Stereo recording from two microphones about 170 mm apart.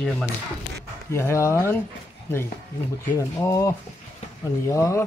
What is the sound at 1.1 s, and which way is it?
Speech, 15° left (ahead or behind).